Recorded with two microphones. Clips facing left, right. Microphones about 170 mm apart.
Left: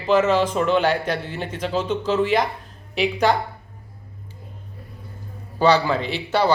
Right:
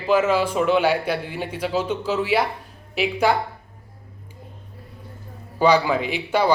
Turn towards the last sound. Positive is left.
turn(degrees=-10)  # may be behind; listen again after turning